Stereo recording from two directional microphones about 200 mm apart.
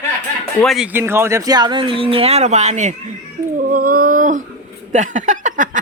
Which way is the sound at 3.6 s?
45° right (ahead or behind).